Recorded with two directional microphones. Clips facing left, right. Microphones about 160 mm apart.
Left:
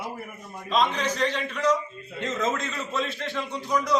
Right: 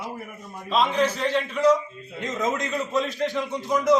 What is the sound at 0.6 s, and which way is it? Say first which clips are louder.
A man's voice: right 3 dB; 5° right (ahead or behind).